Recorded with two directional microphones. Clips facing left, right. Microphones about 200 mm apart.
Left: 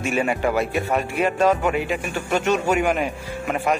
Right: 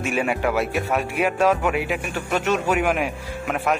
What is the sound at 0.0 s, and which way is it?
Speech, 5° right (ahead or behind).